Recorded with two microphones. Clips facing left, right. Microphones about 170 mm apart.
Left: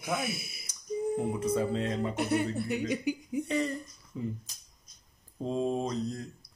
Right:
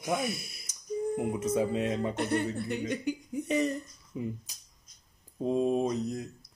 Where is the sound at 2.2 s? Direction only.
10° left (ahead or behind).